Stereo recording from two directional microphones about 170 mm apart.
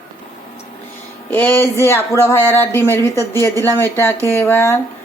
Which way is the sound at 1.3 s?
10° left (ahead or behind).